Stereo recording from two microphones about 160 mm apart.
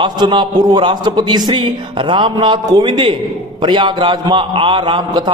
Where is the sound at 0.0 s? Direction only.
30° right (ahead or behind).